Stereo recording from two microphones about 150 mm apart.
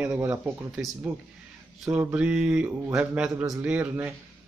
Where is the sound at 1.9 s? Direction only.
10° right (ahead or behind).